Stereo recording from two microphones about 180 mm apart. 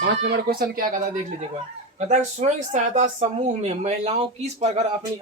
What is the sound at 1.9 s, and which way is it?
Speech, 45° right (ahead or behind).